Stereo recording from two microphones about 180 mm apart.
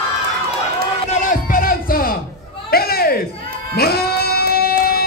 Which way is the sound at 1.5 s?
50° left (ahead or behind).